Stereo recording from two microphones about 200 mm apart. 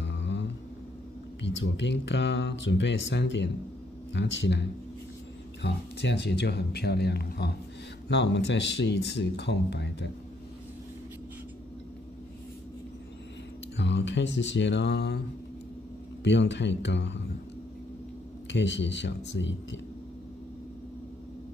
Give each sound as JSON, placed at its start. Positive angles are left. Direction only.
{"t": 0.0, "sound": "music", "side_deg": 60}
{"t": 1.4, "sound": "speech", "side_deg": 65}
{"t": 13.7, "sound": "speech", "side_deg": 60}
{"t": 16.3, "sound": "speech", "side_deg": 60}
{"t": 18.5, "sound": "speech", "side_deg": 65}